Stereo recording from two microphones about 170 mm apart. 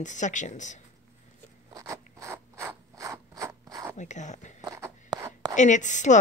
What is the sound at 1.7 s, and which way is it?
Mechanisms, 15° right (ahead or behind).